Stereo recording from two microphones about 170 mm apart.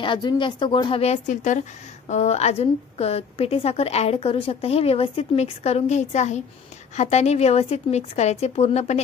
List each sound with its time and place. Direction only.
0.0 s speech: 25° left (ahead or behind)